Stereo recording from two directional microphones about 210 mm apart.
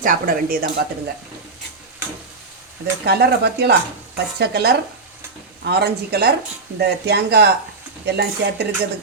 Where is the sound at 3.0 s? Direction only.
50° right (ahead or behind).